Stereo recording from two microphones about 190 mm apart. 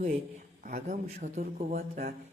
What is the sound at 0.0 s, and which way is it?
A man's voice, 40° right (ahead or behind).